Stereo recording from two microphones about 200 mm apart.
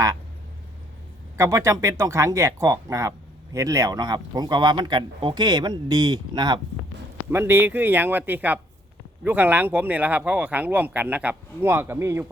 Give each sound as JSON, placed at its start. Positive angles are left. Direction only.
{"t": 1.4, "sound": "speech", "side_deg": -15}